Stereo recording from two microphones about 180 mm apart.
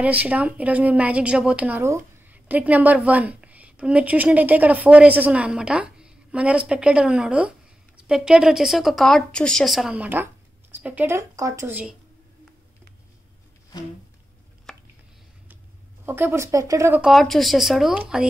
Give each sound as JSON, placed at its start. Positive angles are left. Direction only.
{"t": 0.0, "sound": "a woman's voice", "side_deg": -10}
{"t": 14.7, "sound": "chopping", "side_deg": 0}
{"t": 16.1, "sound": "a woman's voice", "side_deg": -15}
{"t": 17.0, "sound": "speech", "side_deg": 0}